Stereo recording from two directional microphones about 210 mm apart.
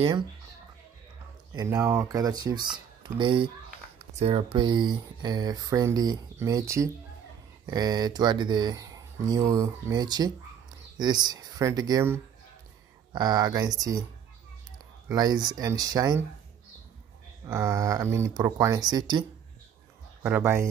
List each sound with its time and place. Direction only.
1.5 s speech: 15° right (ahead or behind)
15.0 s speech: 20° right (ahead or behind)
17.5 s speech: 15° right (ahead or behind)
20.2 s speech: 10° right (ahead or behind)